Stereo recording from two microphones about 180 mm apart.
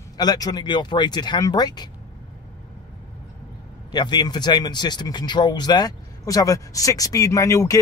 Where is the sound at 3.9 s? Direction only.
25° left (ahead or behind).